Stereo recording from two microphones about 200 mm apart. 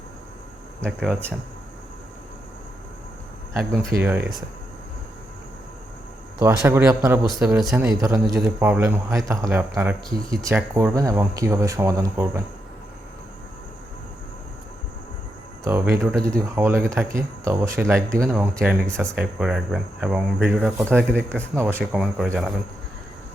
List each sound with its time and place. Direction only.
0.8 s speech: centre (ahead or behind)
4.0 s speech: 5° right (ahead or behind)
6.4 s speech: 15° right (ahead or behind)
7.4 s speech: 5° right (ahead or behind)
8.0 s speech: 15° right (ahead or behind)
15.6 s speech: 10° right (ahead or behind)
16.1 s speech: 5° left (ahead or behind)
16.6 s speech: 10° right (ahead or behind)
18.9 s speech: 5° left (ahead or behind)
19.1 s speech: 5° right (ahead or behind)
21.5 s speech: 15° right (ahead or behind)
21.8 s speech: centre (ahead or behind)